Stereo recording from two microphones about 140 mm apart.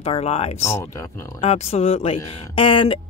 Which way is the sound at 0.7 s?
20° left (ahead or behind).